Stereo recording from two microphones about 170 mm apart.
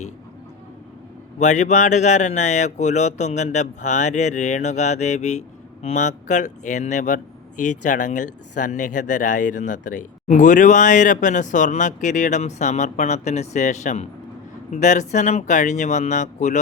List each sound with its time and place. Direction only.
1.4 s speech: 45° left (ahead or behind)